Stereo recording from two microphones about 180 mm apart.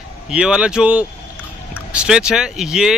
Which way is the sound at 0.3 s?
5° right (ahead or behind).